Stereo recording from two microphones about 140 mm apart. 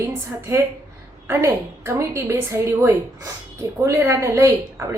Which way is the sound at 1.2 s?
15° right (ahead or behind).